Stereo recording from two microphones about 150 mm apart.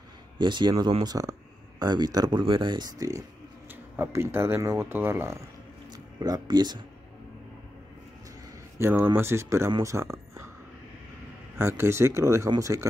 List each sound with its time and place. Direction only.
0.4 s speech: 30° right (ahead or behind)
6.1 s speech: 25° right (ahead or behind)
8.7 s speech: 15° right (ahead or behind)
9.7 s a sound: 20° right (ahead or behind)
11.5 s speech: 15° right (ahead or behind)